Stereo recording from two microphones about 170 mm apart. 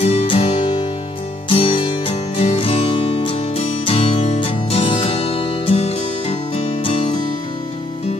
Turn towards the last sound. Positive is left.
turn(degrees=35)  # may be behind; listen again after turning